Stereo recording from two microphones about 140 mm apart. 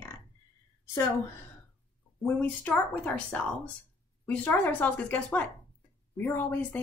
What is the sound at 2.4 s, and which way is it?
Speech, 10° left (ahead or behind).